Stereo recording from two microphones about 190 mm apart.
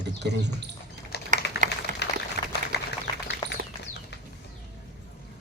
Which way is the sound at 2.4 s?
40° right (ahead or behind).